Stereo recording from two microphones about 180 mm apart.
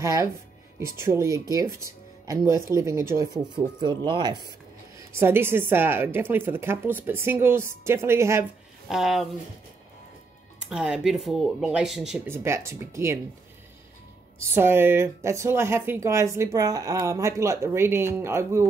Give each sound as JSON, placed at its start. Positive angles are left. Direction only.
{"t": 0.0, "sound": "speech", "side_deg": -15}
{"t": 5.1, "sound": "speech", "side_deg": -15}
{"t": 8.8, "sound": "speech", "side_deg": 0}
{"t": 10.7, "sound": "speech", "side_deg": -5}
{"t": 12.3, "sound": "speech", "side_deg": -15}
{"t": 14.5, "sound": "speech", "side_deg": -15}